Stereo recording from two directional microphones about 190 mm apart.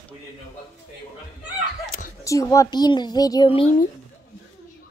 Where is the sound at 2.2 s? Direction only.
15° left (ahead or behind).